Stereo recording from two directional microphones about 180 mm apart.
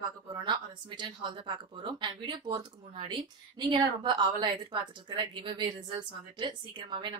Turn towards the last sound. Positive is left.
turn(degrees=-25)  # may be behind; listen again after turning